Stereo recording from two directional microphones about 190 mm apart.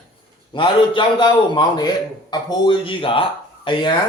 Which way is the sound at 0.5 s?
25° left (ahead or behind).